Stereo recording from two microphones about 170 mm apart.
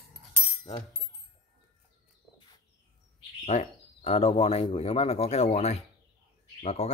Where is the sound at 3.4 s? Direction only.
40° left (ahead or behind).